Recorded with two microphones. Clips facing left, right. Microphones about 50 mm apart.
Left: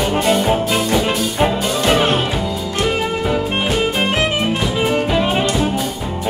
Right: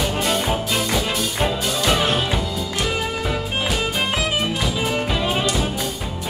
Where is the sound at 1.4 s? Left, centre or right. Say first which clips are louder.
Left 5 dB; left.